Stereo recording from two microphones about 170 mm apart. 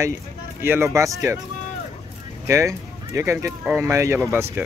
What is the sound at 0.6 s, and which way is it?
Speech, 15° right (ahead or behind).